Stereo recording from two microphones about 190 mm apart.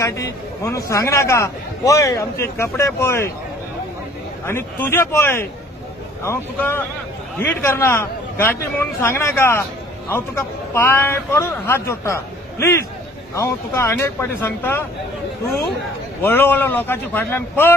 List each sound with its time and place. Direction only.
0.0 s a man's voice: 15° left (ahead or behind)
4.5 s a man's voice: 10° left (ahead or behind)
16.2 s a man's voice: 10° left (ahead or behind)